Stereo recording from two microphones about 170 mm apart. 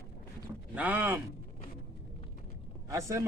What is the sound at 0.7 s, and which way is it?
Speech, 10° right (ahead or behind).